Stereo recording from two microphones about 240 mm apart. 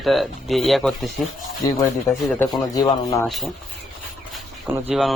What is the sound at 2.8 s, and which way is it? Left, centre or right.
Speech, centre.